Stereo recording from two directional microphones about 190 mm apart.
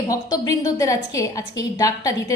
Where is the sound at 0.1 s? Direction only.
20° left (ahead or behind).